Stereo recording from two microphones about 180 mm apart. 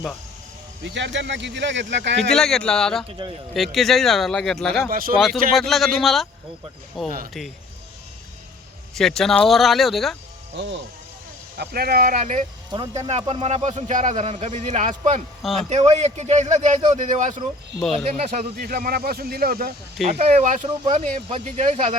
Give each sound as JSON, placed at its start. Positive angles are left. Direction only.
{"t": 0.9, "sound": "speech", "side_deg": -80}
{"t": 2.3, "sound": "speech", "side_deg": 5}
{"t": 4.9, "sound": "speech", "side_deg": -50}
{"t": 5.1, "sound": "speech", "side_deg": 0}
{"t": 9.0, "sound": "speech", "side_deg": 0}
{"t": 10.5, "sound": "speech", "side_deg": -75}
{"t": 11.5, "sound": "a man's voice", "side_deg": -60}
{"t": 18.5, "sound": "speech", "side_deg": -55}
{"t": 20.1, "sound": "speech", "side_deg": -35}